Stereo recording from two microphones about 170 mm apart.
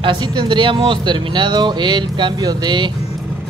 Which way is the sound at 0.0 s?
25° right (ahead or behind).